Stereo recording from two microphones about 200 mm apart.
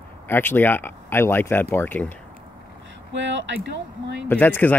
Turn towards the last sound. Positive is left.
turn(degrees=10)  # may be behind; listen again after turning